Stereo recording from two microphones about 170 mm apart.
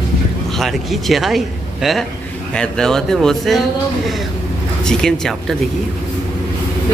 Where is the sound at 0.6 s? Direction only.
Centre (ahead or behind).